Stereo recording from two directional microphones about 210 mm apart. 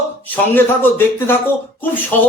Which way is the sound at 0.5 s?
10° left (ahead or behind).